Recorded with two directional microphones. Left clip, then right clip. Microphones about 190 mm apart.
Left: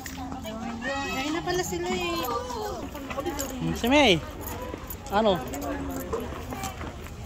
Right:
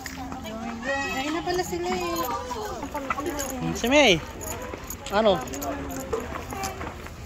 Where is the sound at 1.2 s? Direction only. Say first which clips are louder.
Right 1 dB; 25° right (ahead or behind).